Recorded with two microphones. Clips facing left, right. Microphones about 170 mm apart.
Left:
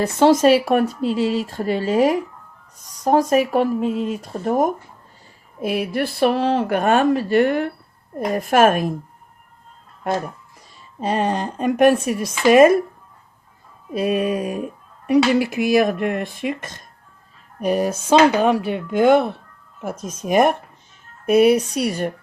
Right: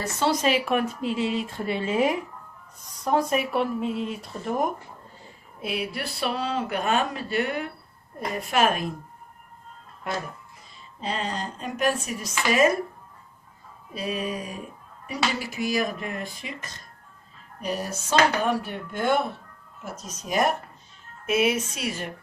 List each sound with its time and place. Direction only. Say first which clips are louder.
0.0 s speech: left 10 dB; 55° left (ahead or behind)
11.0 s speech: left 9 dB; 50° left (ahead or behind)
13.9 s speech: left 10 dB; 55° left (ahead or behind)
17.7 s speech: left 8 dB; 90° left
19.8 s speech: left 10 dB; 55° left (ahead or behind)
21.2 s speech: left 9 dB; 40° left (ahead or behind)